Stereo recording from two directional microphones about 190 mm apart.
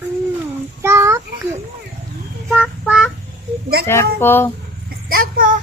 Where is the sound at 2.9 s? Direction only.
Centre (ahead or behind).